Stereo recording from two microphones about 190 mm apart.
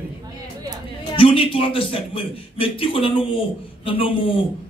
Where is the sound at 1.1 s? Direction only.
25° left (ahead or behind).